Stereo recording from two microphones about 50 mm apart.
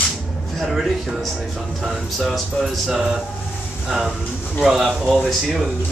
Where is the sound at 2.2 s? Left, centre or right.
Centre.